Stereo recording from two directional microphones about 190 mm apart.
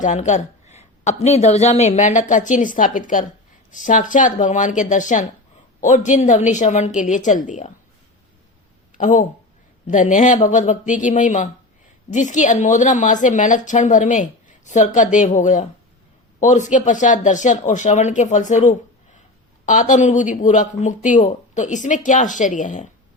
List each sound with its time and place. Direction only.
0.0 s a woman's voice: 40° left (ahead or behind)
9.0 s a woman's voice: 40° left (ahead or behind)